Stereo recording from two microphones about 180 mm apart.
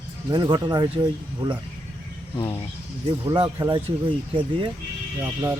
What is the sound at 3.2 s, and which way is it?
Speech, 25° right (ahead or behind).